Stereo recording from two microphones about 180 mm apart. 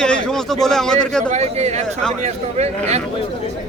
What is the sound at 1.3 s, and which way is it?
A man's voice, 40° right (ahead or behind).